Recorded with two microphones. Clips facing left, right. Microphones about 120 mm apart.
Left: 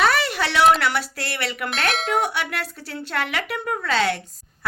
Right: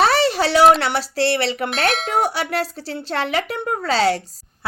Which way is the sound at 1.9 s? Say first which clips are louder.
Left 1 dB; centre (ahead or behind).